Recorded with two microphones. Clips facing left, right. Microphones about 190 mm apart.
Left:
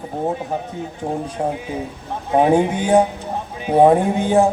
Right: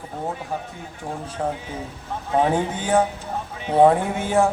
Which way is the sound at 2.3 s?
15° left (ahead or behind).